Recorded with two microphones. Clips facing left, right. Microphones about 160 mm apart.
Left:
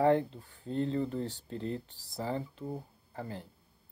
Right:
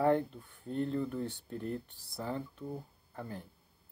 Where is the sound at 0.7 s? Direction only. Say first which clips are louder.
Left 2 dB; 85° left.